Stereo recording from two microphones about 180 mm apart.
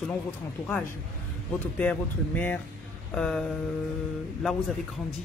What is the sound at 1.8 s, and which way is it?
Speech, 10° left (ahead or behind).